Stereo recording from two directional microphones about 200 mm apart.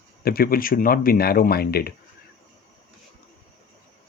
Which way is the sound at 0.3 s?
50° left (ahead or behind).